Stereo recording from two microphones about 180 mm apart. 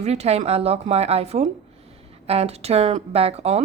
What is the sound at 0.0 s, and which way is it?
Speech, 35° right (ahead or behind).